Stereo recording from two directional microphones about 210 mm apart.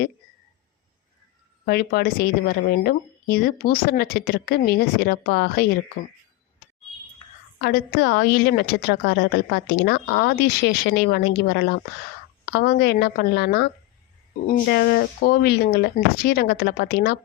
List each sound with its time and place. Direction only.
1.6 s a woman's voice: 45° left (ahead or behind)
7.6 s a woman's voice: 50° left (ahead or behind)
14.7 s a woman's voice: 45° left (ahead or behind)